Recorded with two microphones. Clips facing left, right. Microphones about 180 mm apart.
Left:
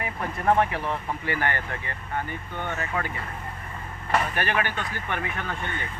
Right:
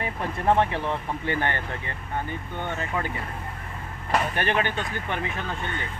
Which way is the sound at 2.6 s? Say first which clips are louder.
Even; 20° right (ahead or behind).